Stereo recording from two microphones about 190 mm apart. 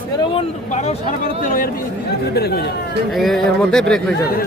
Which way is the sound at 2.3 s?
55° left (ahead or behind).